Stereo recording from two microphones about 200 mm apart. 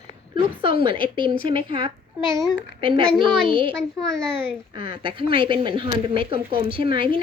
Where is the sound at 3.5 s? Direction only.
25° right (ahead or behind).